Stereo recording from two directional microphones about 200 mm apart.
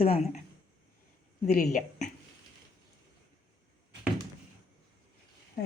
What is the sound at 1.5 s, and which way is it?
Speech, 40° left (ahead or behind).